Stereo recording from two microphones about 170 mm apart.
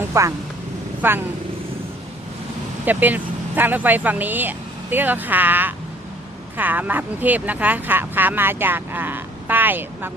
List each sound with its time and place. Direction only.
0.1 s speech: 15° right (ahead or behind)
2.8 s speech: 10° right (ahead or behind)